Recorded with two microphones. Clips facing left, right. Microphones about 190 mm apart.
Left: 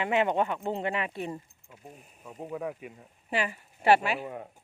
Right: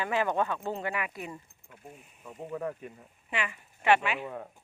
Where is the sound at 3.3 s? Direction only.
35° left (ahead or behind).